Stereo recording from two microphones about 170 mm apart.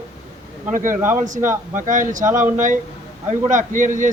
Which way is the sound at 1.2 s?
50° right (ahead or behind).